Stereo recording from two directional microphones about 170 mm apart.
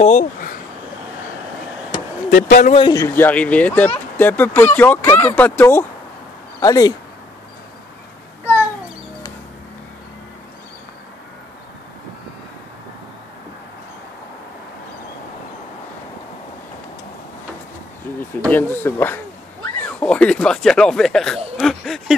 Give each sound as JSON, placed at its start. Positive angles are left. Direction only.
{"t": 0.0, "sound": "speech", "side_deg": 45}
{"t": 2.3, "sound": "speech", "side_deg": 55}
{"t": 2.7, "sound": "speech", "side_deg": 30}
{"t": 3.0, "sound": "speech", "side_deg": 10}
{"t": 18.5, "sound": "speech", "side_deg": 10}
{"t": 21.5, "sound": "a sound", "side_deg": 0}